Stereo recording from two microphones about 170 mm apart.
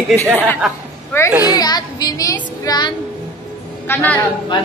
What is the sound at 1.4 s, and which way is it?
Child singing, 25° left (ahead or behind).